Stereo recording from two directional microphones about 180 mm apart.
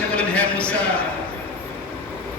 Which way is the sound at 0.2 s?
5° left (ahead or behind).